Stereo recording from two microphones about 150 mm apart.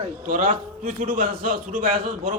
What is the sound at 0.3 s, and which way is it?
A man's voice, 70° right (ahead or behind).